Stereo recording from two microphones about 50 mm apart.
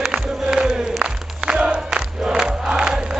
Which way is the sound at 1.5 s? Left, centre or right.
Centre.